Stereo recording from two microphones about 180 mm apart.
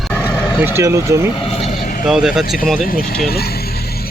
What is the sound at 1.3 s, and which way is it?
Vehicle, 30° left (ahead or behind).